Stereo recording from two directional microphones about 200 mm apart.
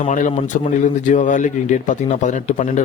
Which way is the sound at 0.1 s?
40° left (ahead or behind).